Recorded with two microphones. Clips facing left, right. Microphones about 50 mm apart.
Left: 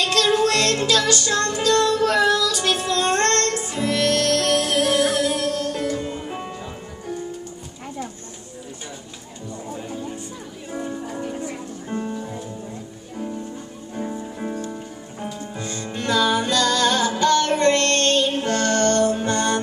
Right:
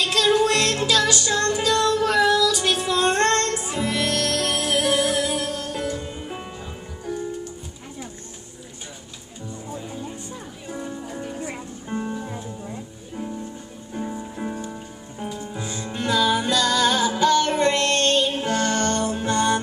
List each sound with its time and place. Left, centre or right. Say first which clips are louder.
0.0 s music: even; centre
10.7 s music: left 3 dB; centre
11.9 s music: even; centre
13.9 s music: left 1 dB; centre